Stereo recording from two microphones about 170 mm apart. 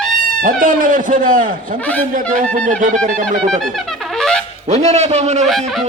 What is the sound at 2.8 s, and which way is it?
Speech, 50° right (ahead or behind).